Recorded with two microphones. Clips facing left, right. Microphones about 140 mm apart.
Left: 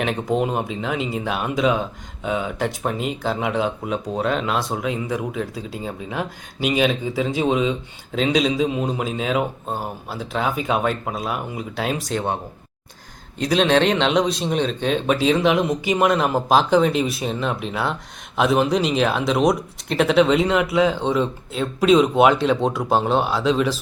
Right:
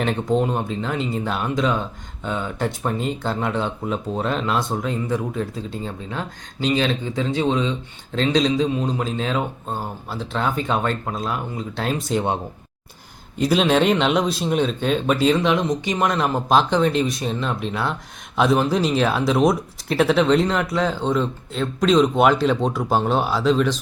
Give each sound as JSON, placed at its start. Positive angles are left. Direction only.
{"t": 0.0, "sound": "speech", "side_deg": 0}
{"t": 8.6, "sound": "a man's voice", "side_deg": 20}
{"t": 9.0, "sound": "speech", "side_deg": 10}
{"t": 13.4, "sound": "speech", "side_deg": -5}